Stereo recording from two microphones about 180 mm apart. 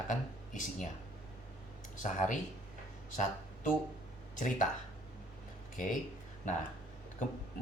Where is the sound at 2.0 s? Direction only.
45° left (ahead or behind).